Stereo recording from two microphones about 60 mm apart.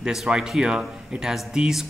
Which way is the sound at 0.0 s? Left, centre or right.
Centre.